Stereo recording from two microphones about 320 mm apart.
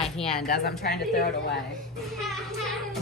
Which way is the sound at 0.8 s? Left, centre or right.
Left.